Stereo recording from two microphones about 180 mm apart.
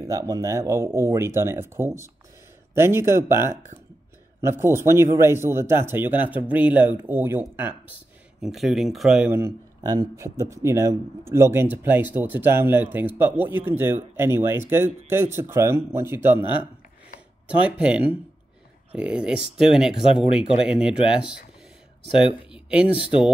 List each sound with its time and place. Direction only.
0.0 s speech: 20° right (ahead or behind)
17.6 s speech: 5° right (ahead or behind)
19.9 s speech: 30° left (ahead or behind)
20.6 s speech: 5° right (ahead or behind)
22.5 s a sound: 5° right (ahead or behind)